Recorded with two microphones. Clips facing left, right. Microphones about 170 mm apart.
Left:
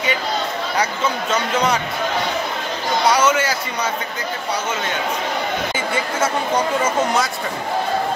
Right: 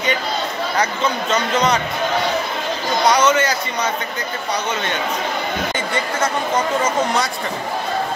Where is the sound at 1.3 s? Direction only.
10° left (ahead or behind).